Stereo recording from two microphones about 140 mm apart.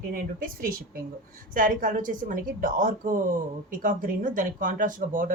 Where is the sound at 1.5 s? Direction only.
70° right (ahead or behind).